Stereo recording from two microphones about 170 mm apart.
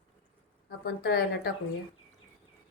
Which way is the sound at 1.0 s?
75° left (ahead or behind).